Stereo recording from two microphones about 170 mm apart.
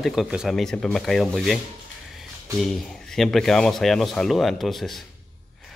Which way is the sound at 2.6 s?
Centre (ahead or behind).